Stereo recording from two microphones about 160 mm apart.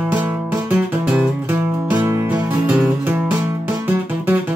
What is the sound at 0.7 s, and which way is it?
Guitar, 10° right (ahead or behind).